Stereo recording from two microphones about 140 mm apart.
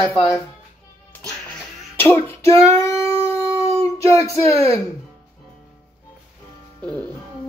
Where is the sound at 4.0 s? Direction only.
25° left (ahead or behind).